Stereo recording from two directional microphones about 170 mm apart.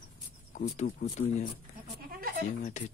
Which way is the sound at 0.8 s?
50° left (ahead or behind).